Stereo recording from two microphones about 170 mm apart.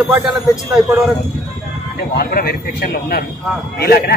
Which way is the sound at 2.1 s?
65° left (ahead or behind).